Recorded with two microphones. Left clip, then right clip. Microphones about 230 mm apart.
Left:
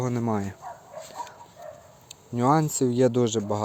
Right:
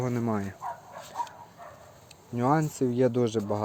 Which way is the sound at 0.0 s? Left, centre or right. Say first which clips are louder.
Left 2 dB; centre.